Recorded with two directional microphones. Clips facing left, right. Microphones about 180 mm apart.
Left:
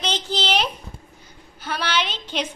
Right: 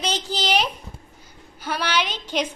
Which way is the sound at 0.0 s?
10° right (ahead or behind).